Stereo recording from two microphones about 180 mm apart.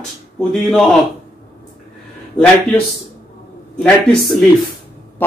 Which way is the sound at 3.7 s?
Centre (ahead or behind).